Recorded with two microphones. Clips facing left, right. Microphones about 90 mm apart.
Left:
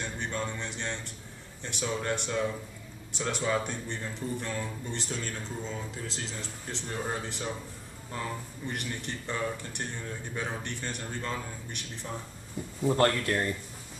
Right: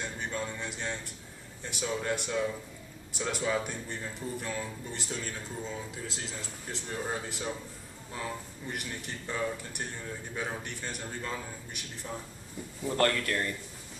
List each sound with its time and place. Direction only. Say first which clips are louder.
0.0 s music: left 1 dB; 5° right (ahead or behind)
1.6 s a man's voice: left 1 dB; 5° right (ahead or behind)
12.8 s speech: left 3 dB; 25° left (ahead or behind)